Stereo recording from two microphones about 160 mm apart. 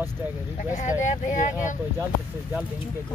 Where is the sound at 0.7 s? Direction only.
50° left (ahead or behind).